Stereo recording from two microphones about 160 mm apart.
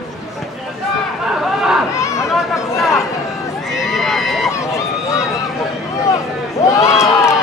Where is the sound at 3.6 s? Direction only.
Centre (ahead or behind).